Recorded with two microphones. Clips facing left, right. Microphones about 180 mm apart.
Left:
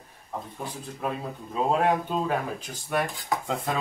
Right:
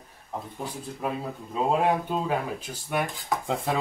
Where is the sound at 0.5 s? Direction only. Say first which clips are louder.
Right 1 dB; 5° right (ahead or behind).